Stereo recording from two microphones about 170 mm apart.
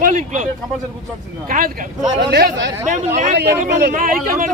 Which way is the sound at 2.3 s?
80° right.